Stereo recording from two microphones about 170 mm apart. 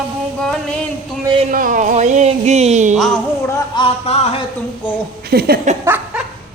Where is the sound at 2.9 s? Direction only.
Centre (ahead or behind).